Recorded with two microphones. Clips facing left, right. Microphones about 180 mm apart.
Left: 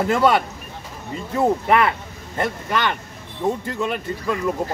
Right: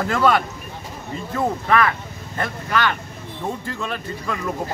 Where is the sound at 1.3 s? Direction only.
20° left (ahead or behind).